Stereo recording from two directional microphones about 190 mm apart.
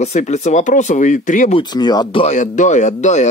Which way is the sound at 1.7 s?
20° left (ahead or behind).